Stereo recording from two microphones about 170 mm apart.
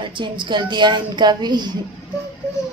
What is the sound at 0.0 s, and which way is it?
A woman's voice, 30° right (ahead or behind).